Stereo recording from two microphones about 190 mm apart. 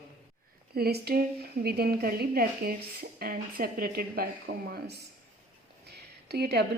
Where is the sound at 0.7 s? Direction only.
55° right (ahead or behind).